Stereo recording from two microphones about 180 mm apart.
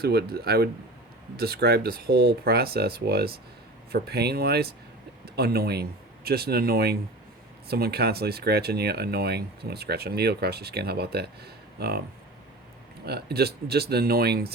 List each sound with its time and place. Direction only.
0.0 s speech: 60° right (ahead or behind)
13.1 s speech: 60° right (ahead or behind)